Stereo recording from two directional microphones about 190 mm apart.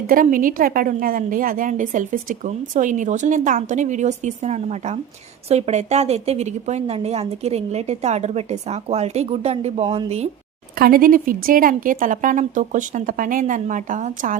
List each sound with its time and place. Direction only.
0.1 s a woman's voice: 45° right (ahead or behind)
10.8 s a woman's voice: 50° right (ahead or behind)